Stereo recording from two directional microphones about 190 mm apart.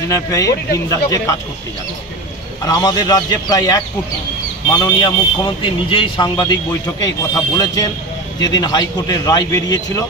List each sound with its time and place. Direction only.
0.1 s speech: 15° left (ahead or behind)
2.6 s speech: 20° left (ahead or behind)